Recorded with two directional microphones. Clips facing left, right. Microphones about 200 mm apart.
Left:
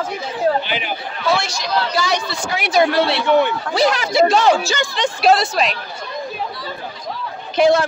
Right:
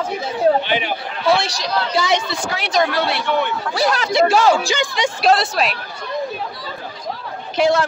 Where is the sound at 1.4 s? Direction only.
30° right (ahead or behind).